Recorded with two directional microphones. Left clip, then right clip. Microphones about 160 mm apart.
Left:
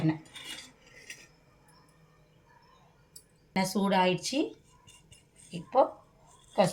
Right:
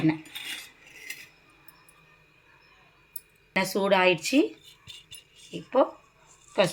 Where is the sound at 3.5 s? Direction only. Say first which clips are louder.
Right 4 dB; 20° right (ahead or behind).